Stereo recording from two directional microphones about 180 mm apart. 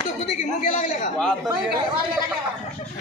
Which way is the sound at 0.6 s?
45° left (ahead or behind).